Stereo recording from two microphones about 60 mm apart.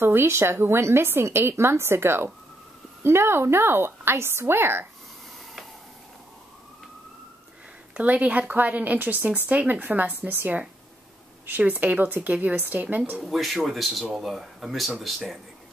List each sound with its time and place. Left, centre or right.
0.0 s a woman's voice: right
7.9 s speech: right
13.2 s speech: centre